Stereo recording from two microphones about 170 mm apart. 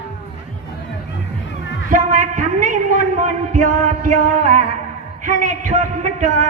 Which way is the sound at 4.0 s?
45° right (ahead or behind).